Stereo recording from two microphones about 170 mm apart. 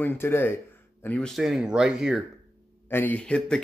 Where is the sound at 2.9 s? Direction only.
10° left (ahead or behind).